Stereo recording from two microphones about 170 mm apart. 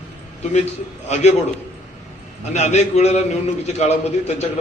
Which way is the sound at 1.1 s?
40° left (ahead or behind).